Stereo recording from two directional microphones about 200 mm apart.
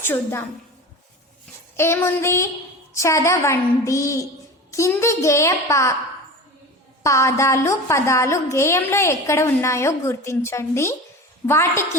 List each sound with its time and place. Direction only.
0.0 s a woman's voice: 10° left (ahead or behind)
1.7 s a woman's voice: 10° left (ahead or behind)
7.0 s a woman's voice: 15° left (ahead or behind)